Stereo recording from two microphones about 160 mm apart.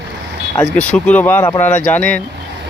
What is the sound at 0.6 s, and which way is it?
Speech, 10° left (ahead or behind).